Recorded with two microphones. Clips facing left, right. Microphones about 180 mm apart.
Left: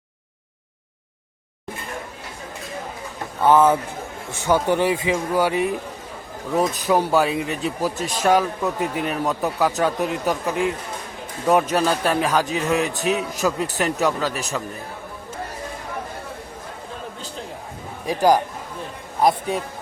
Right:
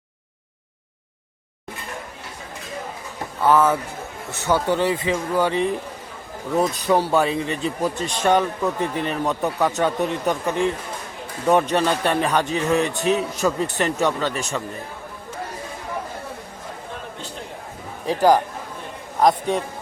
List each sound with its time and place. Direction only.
3.4 s a man's voice: 20° left (ahead or behind); by 14.4 s 5° left (ahead or behind)
18.0 s a man's voice: 10° left (ahead or behind)